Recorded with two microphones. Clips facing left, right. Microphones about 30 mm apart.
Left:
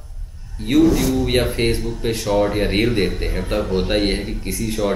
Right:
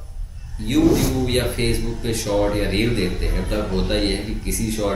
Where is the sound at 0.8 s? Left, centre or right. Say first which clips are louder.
Even; centre.